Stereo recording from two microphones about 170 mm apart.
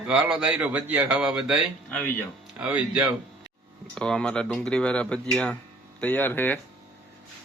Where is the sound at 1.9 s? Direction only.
10° left (ahead or behind).